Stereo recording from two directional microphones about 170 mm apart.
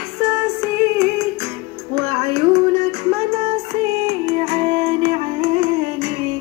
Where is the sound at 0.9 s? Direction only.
15° right (ahead or behind).